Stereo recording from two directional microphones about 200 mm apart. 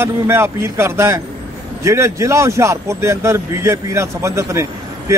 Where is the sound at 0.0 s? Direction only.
10° right (ahead or behind).